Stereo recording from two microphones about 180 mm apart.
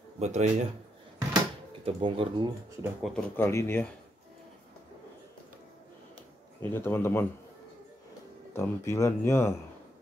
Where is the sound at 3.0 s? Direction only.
5° left (ahead or behind).